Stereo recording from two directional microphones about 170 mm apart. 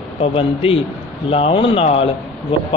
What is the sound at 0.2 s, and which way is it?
A man's voice, 35° left (ahead or behind).